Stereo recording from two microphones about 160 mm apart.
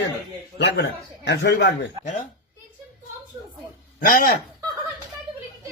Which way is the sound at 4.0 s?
60° left (ahead or behind).